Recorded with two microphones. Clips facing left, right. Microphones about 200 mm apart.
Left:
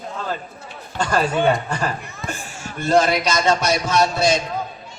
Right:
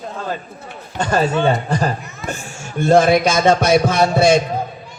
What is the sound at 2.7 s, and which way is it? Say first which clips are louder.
A man's voice: right 5 dB; 55° right (ahead or behind).